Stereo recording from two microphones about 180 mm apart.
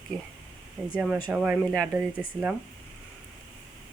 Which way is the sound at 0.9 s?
5° right (ahead or behind).